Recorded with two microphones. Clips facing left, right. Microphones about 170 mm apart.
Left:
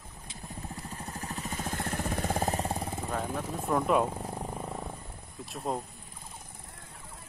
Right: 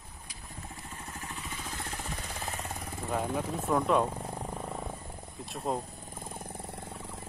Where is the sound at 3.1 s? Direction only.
10° right (ahead or behind).